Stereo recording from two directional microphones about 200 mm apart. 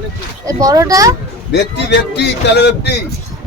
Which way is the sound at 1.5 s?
60° left (ahead or behind).